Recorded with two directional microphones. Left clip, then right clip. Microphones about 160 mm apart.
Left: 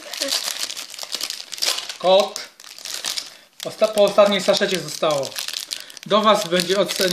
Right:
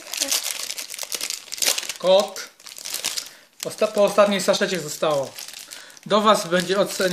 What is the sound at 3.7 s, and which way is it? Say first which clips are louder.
Speech: left 2 dB; 25° right (ahead or behind).